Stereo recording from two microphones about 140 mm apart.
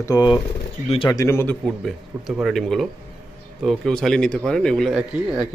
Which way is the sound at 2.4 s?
Centre (ahead or behind).